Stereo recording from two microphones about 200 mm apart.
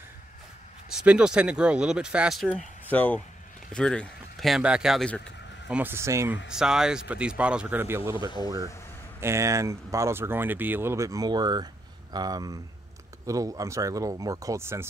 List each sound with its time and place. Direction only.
0.9 s speech: 5° right (ahead or behind)
5.7 s speech: 10° right (ahead or behind)